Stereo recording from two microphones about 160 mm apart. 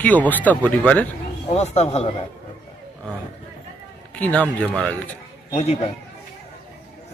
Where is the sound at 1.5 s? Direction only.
40° left (ahead or behind).